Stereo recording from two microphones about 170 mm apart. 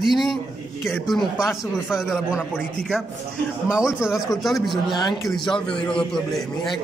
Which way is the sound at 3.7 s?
5° right (ahead or behind).